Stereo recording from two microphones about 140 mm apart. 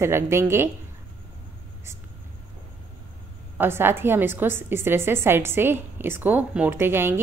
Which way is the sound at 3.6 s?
15° right (ahead or behind).